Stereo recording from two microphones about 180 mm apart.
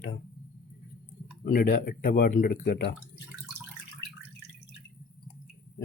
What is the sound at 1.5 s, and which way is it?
Speech, 50° left (ahead or behind).